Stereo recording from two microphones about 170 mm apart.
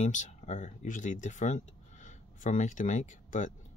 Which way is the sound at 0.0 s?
45° left (ahead or behind).